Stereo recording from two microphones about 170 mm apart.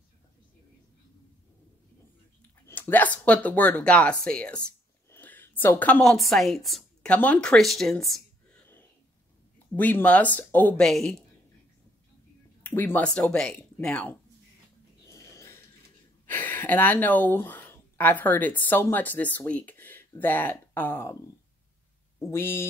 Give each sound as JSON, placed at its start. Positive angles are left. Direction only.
{"t": 2.6, "sound": "speech", "side_deg": 10}
{"t": 9.8, "sound": "speech", "side_deg": 10}
{"t": 12.6, "sound": "speech", "side_deg": 10}
{"t": 15.0, "sound": "snort", "side_deg": 20}
{"t": 16.3, "sound": "speech", "side_deg": 10}
{"t": 22.3, "sound": "speech", "side_deg": 15}